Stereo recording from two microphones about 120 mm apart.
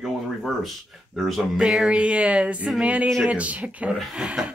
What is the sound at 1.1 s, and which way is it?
Speech, centre (ahead or behind).